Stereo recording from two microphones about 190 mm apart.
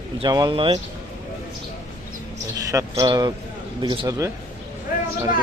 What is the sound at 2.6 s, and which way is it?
A man's voice, 15° right (ahead or behind).